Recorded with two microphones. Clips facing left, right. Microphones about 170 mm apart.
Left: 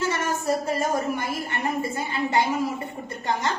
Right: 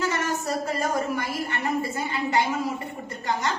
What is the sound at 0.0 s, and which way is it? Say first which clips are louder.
A woman's voice: left 1 dB; 25° left (ahead or behind).